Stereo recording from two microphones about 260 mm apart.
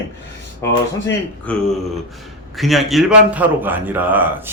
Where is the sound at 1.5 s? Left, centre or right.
Centre.